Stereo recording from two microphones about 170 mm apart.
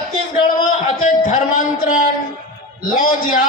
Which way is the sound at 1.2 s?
50° left (ahead or behind).